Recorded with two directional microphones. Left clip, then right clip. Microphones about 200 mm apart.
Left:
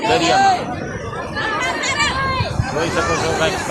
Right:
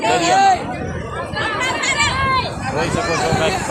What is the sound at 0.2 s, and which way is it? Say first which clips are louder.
Speech: right 1 dB; 35° right (ahead or behind).